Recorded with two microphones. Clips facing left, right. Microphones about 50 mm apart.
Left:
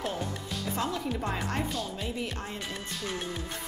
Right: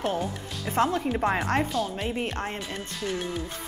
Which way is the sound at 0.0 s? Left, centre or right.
Right.